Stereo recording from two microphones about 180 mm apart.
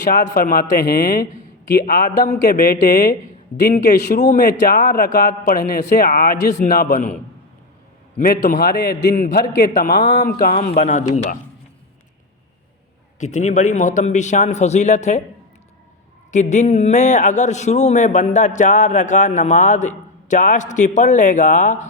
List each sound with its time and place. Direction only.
0.1 s a man's voice: 55° left (ahead or behind)
1.8 s a man's voice: 50° left (ahead or behind)
8.2 s a man's voice: 50° left (ahead or behind)
8.5 s a man's voice: 65° left (ahead or behind)
10.0 s a man's voice: 45° left (ahead or behind)
13.1 s a man's voice: 40° left (ahead or behind)
16.3 s a man's voice: 40° left (ahead or behind)